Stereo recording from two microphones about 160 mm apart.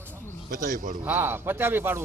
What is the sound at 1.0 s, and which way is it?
Speech, 10° right (ahead or behind).